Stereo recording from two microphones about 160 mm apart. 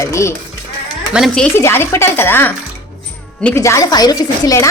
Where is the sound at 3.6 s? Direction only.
20° left (ahead or behind).